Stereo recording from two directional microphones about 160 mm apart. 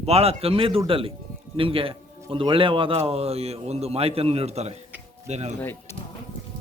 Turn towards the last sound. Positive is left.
turn(degrees=-45)  # may be behind; listen again after turning